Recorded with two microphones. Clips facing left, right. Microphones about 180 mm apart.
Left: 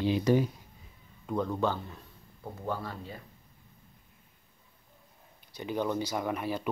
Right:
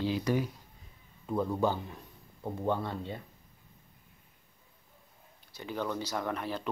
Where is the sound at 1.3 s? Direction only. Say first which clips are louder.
Even; 10° right (ahead or behind).